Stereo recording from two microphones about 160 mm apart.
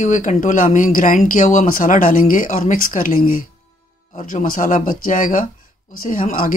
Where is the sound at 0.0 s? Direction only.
50° left (ahead or behind).